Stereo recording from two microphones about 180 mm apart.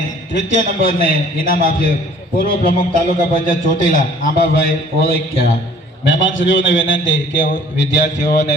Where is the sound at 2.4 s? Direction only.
50° left (ahead or behind).